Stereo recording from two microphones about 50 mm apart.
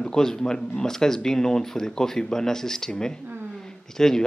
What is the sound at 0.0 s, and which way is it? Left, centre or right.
Speech, centre.